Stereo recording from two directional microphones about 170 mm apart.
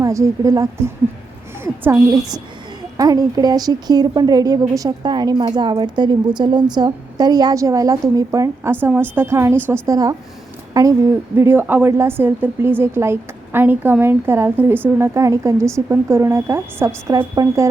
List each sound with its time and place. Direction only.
0.0 s a woman's voice: 20° right (ahead or behind)